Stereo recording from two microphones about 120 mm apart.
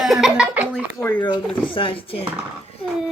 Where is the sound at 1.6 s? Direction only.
45° left (ahead or behind).